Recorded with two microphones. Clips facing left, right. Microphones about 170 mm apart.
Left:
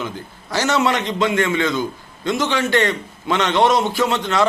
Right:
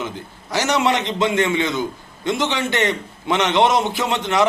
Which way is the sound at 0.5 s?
20° right (ahead or behind).